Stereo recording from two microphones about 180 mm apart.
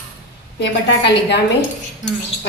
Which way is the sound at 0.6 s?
75° left (ahead or behind).